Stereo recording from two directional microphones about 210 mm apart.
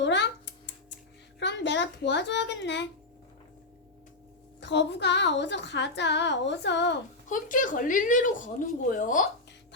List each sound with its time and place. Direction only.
0.0 s a sound: 55° left (ahead or behind)
1.4 s a woman's voice: 55° left (ahead or behind)
4.6 s a woman's voice: 55° left (ahead or behind)
7.3 s speech: 40° left (ahead or behind)